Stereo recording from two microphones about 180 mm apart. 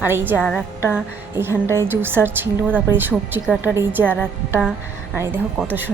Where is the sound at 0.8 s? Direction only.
15° right (ahead or behind).